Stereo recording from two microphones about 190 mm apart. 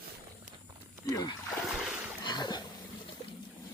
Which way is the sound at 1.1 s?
20° left (ahead or behind).